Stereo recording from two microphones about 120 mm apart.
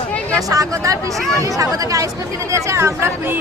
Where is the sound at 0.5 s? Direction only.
30° right (ahead or behind).